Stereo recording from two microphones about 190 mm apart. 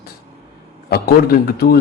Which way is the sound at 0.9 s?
55° left (ahead or behind).